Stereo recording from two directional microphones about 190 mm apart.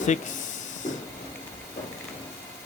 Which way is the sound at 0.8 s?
40° left (ahead or behind).